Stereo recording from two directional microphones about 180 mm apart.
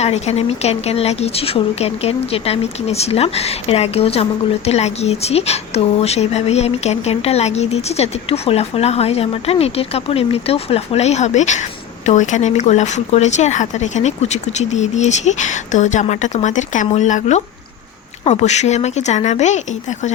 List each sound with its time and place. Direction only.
0.0 s speech: 35° left (ahead or behind)